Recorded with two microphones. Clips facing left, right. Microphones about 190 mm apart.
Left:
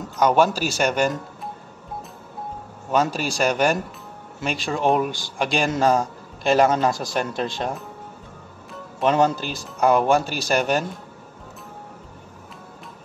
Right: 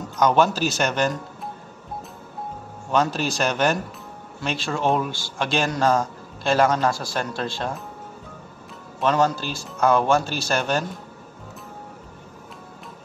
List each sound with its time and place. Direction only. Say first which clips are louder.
0.2 s a man's voice: left 1 dB; 10° left (ahead or behind)
2.9 s a man's voice: even; 10° left (ahead or behind)
9.0 s a man's voice: left 2 dB; 20° left (ahead or behind)